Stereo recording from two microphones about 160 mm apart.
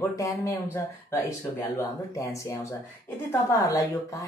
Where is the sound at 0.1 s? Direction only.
20° left (ahead or behind).